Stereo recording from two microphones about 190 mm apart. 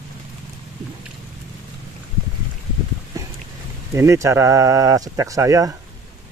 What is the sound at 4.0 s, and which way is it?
Speech, 15° right (ahead or behind).